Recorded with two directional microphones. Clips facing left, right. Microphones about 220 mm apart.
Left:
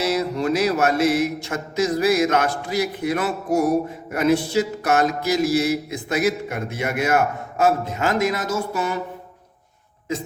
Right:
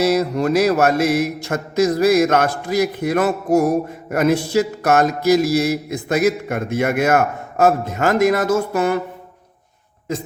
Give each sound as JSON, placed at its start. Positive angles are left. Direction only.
{"t": 0.0, "sound": "mantra", "side_deg": -40}